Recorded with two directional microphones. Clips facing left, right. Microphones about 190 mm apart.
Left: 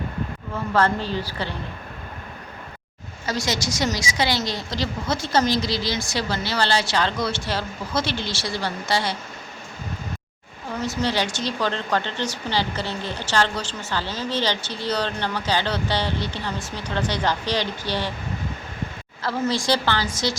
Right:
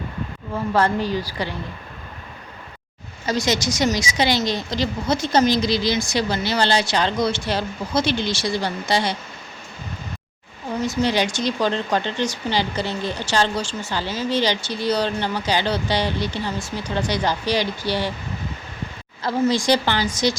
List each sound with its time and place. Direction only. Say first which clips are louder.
0.5 s speech: right 2 dB; 15° right (ahead or behind)
3.2 s speech: right 4 dB; 20° right (ahead or behind)
10.8 s speech: right 3 dB; 15° right (ahead or behind)
19.2 s speech: right 4 dB; 15° right (ahead or behind)